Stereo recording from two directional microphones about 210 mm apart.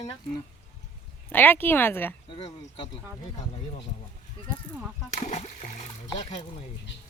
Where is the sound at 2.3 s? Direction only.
25° left (ahead or behind).